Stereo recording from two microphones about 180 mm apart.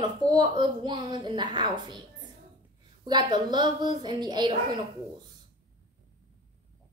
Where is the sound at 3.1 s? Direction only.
25° right (ahead or behind).